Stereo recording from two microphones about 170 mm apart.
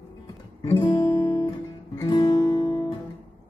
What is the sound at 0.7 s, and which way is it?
Guitar, 20° left (ahead or behind).